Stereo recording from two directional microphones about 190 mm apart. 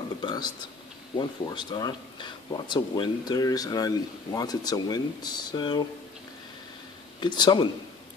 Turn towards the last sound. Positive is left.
turn(degrees=25)  # may be behind; listen again after turning